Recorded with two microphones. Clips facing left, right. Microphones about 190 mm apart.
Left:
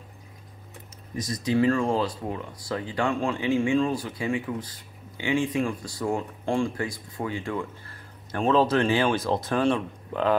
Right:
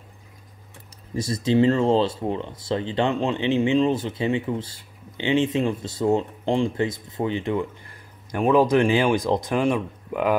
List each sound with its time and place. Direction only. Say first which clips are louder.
1.1 s speech: right 4 dB; 30° right (ahead or behind); by 10.3 s 10° right (ahead or behind)